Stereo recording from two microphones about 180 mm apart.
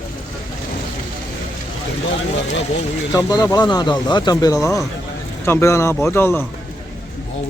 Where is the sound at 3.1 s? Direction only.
20° left (ahead or behind).